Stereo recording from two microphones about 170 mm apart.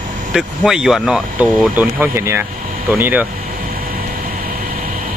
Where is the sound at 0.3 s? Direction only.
5° right (ahead or behind).